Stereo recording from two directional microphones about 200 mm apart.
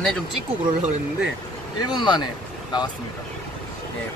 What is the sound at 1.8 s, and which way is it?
Speech, 20° left (ahead or behind).